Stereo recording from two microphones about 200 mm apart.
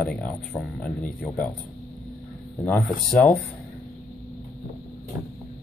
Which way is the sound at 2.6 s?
5° left (ahead or behind).